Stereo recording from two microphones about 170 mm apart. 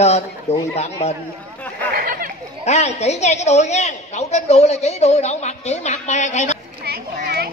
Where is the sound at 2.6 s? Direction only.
40° left (ahead or behind).